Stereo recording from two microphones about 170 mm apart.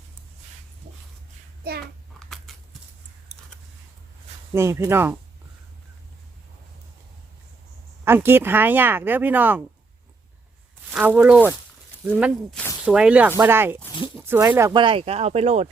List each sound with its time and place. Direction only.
1.8 s babbling: centre (ahead or behind)
4.5 s speech: 15° right (ahead or behind)
8.0 s speech: 15° right (ahead or behind)
10.9 s speech: 10° right (ahead or behind)
14.8 s speech: 30° right (ahead or behind)